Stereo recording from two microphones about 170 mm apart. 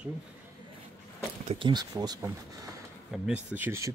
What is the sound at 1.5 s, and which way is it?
Speech, 25° right (ahead or behind).